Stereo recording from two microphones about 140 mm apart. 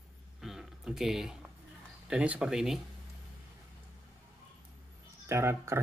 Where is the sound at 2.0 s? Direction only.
10° right (ahead or behind).